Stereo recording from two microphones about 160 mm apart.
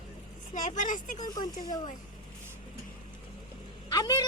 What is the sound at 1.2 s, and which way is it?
Speech, 25° left (ahead or behind).